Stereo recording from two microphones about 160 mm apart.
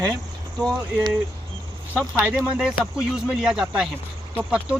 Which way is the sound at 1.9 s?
10° right (ahead or behind).